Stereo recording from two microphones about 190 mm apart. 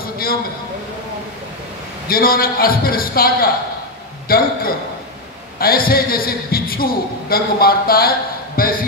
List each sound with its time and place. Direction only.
0.0 s a sound: 50° left (ahead or behind)
2.0 s a man's voice: 50° left (ahead or behind)
5.6 s a man's voice: 50° left (ahead or behind)